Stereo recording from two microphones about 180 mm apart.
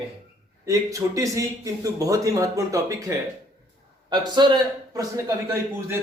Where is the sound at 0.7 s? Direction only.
20° right (ahead or behind).